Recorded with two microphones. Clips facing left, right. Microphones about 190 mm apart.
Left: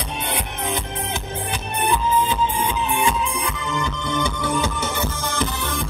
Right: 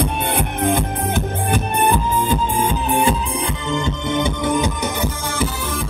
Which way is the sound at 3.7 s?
25° right (ahead or behind).